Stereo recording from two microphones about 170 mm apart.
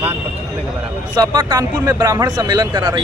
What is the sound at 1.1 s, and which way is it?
Speech, 25° right (ahead or behind).